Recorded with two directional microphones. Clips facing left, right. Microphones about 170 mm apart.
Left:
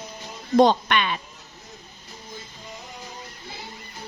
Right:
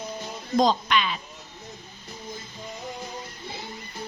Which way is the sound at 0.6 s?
60° left (ahead or behind).